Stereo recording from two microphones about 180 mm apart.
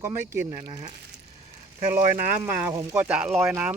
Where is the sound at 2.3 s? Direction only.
10° right (ahead or behind).